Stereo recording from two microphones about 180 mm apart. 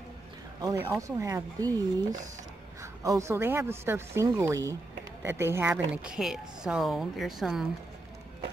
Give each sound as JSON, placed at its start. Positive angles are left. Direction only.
{"t": 0.6, "sound": "a woman's voice", "side_deg": -15}